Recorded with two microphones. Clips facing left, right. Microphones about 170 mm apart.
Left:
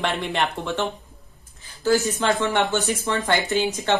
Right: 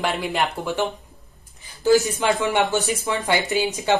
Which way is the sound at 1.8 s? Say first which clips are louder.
Right 3 dB; 15° right (ahead or behind).